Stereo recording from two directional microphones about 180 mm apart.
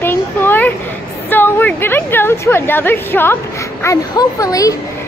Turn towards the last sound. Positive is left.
turn(degrees=20)  # may be behind; listen again after turning